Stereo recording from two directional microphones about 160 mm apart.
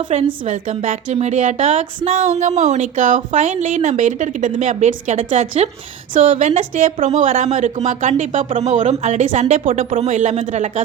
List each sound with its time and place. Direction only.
0.1 s a woman's voice: 45° right (ahead or behind)
6.1 s a woman's voice: 35° right (ahead or behind)
6.4 s speech: 55° right (ahead or behind)
8.4 s a woman's voice: 35° right (ahead or behind)
8.7 s speech: 45° right (ahead or behind)
10.3 s a woman's voice: 35° right (ahead or behind)